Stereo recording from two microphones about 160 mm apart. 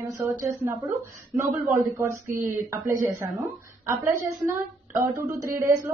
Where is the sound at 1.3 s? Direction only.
20° right (ahead or behind).